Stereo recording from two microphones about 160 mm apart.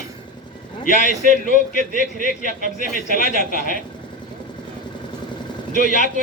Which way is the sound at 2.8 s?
60° left (ahead or behind).